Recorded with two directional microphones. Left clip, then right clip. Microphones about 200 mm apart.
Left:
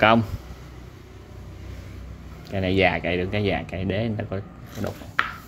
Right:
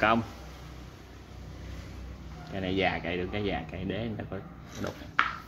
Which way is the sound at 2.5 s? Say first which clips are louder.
Left 8 dB; 35° left (ahead or behind).